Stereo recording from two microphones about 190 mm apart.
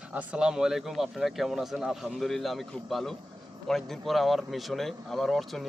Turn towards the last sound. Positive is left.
turn(degrees=0)  # may be behind; listen again after turning